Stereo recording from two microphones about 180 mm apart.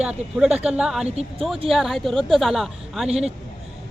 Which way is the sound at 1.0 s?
35° right (ahead or behind).